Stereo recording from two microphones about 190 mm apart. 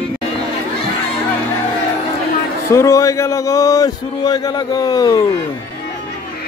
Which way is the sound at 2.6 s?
15° left (ahead or behind).